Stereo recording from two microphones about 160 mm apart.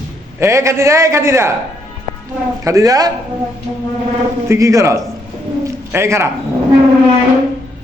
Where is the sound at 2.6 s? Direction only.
20° right (ahead or behind).